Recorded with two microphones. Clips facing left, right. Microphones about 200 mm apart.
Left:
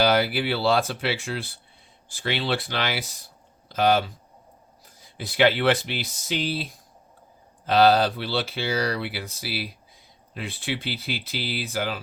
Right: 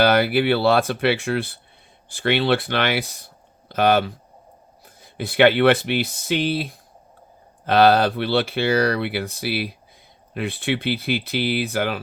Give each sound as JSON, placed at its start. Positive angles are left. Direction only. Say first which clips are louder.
{"t": 0.0, "sound": "speech", "louder": "right 4 dB", "side_deg": -60}